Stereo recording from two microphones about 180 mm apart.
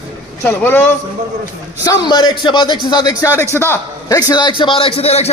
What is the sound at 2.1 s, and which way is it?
A man's voice, 25° left (ahead or behind).